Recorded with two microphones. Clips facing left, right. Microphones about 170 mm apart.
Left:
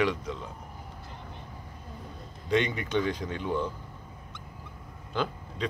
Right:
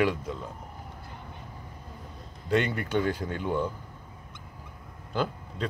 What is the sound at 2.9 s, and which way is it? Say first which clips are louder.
Speech: right 1 dB; 5° right (ahead or behind).